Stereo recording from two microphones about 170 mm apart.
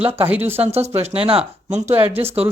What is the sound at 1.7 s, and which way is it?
Speech, 15° right (ahead or behind).